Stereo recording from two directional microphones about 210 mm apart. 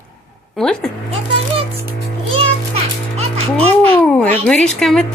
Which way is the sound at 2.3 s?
30° right (ahead or behind).